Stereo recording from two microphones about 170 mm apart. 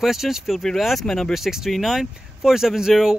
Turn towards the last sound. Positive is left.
turn(degrees=-5)  # may be behind; listen again after turning